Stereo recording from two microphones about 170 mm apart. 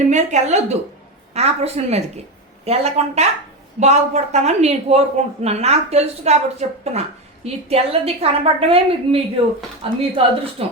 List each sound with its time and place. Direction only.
0.1 s a woman's voice: 45° right (ahead or behind)